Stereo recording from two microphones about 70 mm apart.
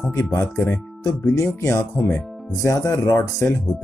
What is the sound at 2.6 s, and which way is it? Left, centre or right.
Speech, left.